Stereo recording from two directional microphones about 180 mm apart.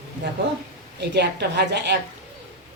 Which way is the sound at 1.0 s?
70° right (ahead or behind).